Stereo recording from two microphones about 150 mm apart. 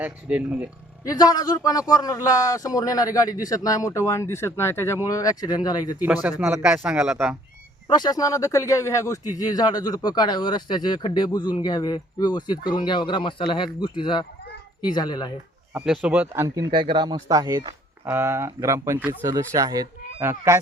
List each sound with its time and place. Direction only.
0.0 s speech: 10° right (ahead or behind)
1.0 s speech: 25° left (ahead or behind)
6.4 s speech: 15° right (ahead or behind)
7.9 s speech: 25° left (ahead or behind)
15.7 s speech: 5° right (ahead or behind)
16.7 s speech: 30° right (ahead or behind); by 20.6 s 15° right (ahead or behind)